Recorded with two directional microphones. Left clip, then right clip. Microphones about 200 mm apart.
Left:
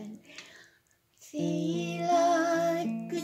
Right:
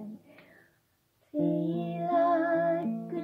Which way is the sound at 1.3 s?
20° left (ahead or behind).